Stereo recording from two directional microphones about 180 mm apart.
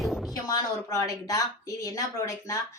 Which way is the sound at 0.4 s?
20° left (ahead or behind).